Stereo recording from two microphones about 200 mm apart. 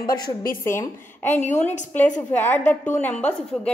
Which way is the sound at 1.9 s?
5° left (ahead or behind).